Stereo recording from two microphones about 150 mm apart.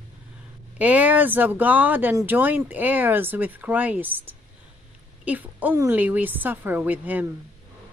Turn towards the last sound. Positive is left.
turn(degrees=-10)  # may be behind; listen again after turning